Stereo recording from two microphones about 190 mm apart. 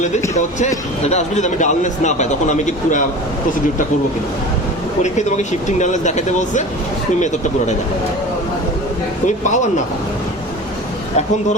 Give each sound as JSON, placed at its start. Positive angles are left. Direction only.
{"t": 1.0, "sound": "a man's voice", "side_deg": 35}
{"t": 5.0, "sound": "a man's voice", "side_deg": 40}
{"t": 9.2, "sound": "a man's voice", "side_deg": 40}